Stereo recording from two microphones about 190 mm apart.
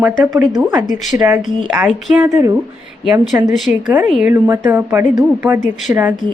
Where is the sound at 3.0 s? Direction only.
5° right (ahead or behind).